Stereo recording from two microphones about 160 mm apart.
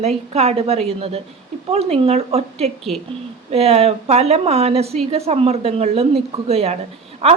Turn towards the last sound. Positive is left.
turn(degrees=-40)  # may be behind; listen again after turning